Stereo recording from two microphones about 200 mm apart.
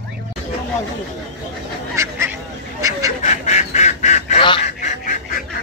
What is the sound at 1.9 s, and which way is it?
Goose, 15° right (ahead or behind).